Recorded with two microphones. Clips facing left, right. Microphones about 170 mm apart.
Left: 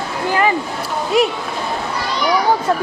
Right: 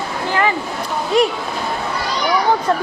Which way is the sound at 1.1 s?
Centre (ahead or behind).